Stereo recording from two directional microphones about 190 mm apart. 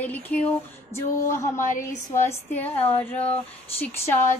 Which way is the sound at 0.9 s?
40° left (ahead or behind).